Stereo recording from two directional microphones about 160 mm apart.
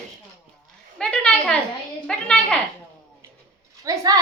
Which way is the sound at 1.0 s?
5° left (ahead or behind).